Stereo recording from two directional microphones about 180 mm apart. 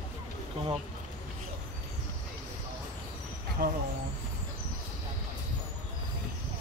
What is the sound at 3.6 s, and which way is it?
Speech, 60° right (ahead or behind).